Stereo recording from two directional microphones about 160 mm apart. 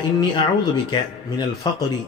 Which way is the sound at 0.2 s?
30° left (ahead or behind).